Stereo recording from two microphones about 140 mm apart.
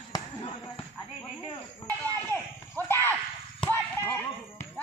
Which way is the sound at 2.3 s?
15° left (ahead or behind).